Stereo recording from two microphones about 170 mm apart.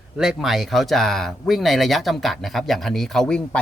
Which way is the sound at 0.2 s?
Centre (ahead or behind).